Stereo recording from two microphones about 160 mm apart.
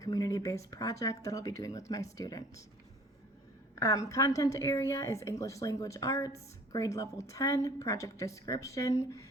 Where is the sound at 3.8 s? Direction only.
20° left (ahead or behind).